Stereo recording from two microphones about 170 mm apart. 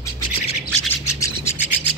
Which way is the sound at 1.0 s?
20° left (ahead or behind).